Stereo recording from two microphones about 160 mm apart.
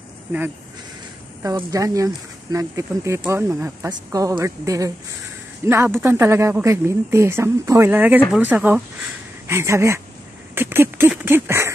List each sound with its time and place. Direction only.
1.4 s speech: 20° right (ahead or behind)
10.5 s a sound: 15° right (ahead or behind)
11.2 s speech: 15° right (ahead or behind)